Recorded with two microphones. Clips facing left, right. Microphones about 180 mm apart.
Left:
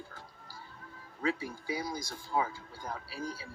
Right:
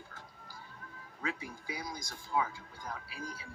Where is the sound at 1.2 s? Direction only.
30° left (ahead or behind).